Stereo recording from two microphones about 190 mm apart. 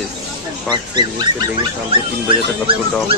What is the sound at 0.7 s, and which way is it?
Speech, 25° right (ahead or behind).